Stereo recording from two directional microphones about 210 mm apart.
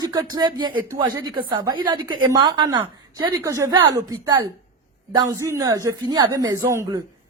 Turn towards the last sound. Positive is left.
turn(degrees=-10)  # may be behind; listen again after turning